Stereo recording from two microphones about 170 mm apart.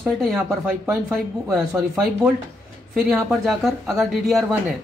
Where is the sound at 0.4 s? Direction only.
10° right (ahead or behind).